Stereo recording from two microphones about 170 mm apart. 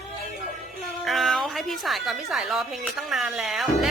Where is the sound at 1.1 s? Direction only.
Centre (ahead or behind).